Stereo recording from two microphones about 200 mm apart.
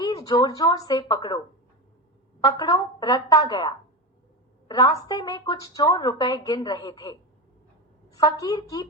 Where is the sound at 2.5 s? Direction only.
20° left (ahead or behind).